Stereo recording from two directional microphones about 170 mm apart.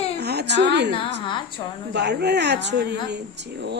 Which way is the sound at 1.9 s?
80° right.